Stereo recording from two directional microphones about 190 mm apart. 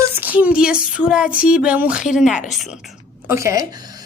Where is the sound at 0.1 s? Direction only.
10° right (ahead or behind).